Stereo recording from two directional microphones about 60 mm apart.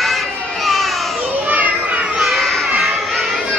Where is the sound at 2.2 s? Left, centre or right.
Centre.